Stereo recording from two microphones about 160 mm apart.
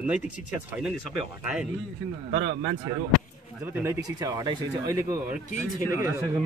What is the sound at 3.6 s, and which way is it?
Speech, 15° right (ahead or behind).